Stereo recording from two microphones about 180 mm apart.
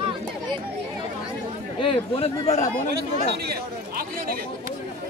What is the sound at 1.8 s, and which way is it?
Speech, 30° left (ahead or behind).